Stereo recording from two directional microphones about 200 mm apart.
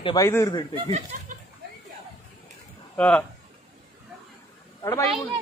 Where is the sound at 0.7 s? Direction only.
35° right (ahead or behind).